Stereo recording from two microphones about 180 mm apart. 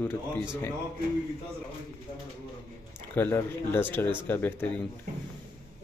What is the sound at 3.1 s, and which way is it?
Speech, 10° left (ahead or behind).